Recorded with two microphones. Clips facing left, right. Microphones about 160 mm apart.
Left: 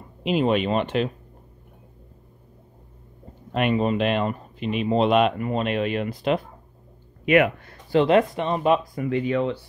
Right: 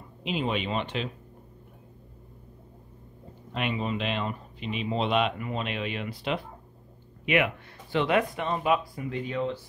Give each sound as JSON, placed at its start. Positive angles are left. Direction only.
{"t": 0.2, "sound": "speech", "side_deg": 50}
{"t": 3.5, "sound": "speech", "side_deg": 55}
{"t": 7.9, "sound": "speech", "side_deg": 35}
{"t": 8.9, "sound": "speech", "side_deg": 65}